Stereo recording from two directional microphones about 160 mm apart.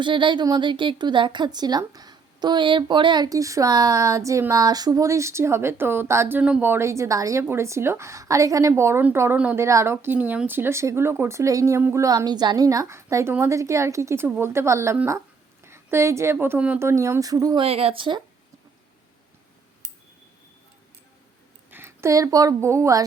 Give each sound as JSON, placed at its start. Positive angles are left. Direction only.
{"t": 0.0, "sound": "a woman's voice", "side_deg": -30}
{"t": 21.7, "sound": "a woman's voice", "side_deg": -15}